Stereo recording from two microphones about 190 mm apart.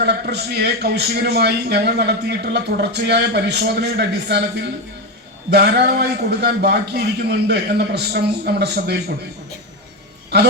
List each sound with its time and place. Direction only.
0.0 s a man's voice: 60° right (ahead or behind)
10.3 s a man's voice: 60° right (ahead or behind)